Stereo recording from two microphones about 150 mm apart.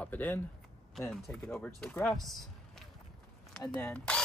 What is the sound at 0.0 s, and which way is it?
Speech, 10° left (ahead or behind).